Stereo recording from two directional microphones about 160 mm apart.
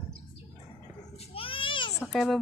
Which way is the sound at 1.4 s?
35° left (ahead or behind).